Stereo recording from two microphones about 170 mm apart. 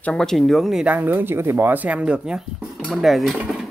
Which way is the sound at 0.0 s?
5° left (ahead or behind).